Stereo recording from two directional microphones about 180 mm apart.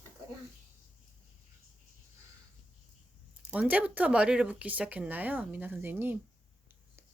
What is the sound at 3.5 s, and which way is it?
Speech, 10° right (ahead or behind).